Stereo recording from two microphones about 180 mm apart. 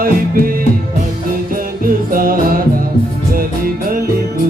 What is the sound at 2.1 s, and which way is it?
Music, 50° right (ahead or behind).